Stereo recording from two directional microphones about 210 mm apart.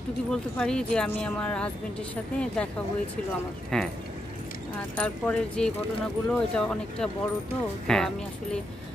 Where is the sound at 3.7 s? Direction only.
Centre (ahead or behind).